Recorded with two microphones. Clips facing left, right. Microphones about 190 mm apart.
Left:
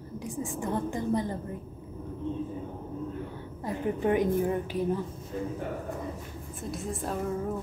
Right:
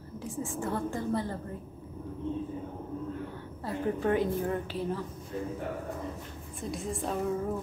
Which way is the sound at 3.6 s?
15° left (ahead or behind).